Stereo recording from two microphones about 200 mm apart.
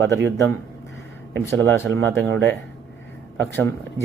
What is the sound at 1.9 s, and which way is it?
Speech, 65° right (ahead or behind).